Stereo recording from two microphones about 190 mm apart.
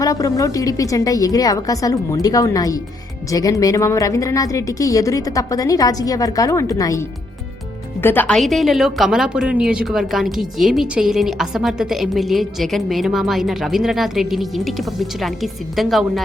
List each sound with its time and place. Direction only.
0.0 s a woman's voice: 20° left (ahead or behind)
8.0 s a woman's voice: 10° left (ahead or behind)